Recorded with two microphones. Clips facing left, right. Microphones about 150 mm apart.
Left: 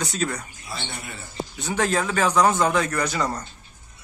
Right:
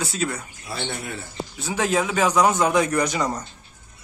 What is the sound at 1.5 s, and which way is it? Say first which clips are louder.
Speech: right 1 dB; 5° right (ahead or behind).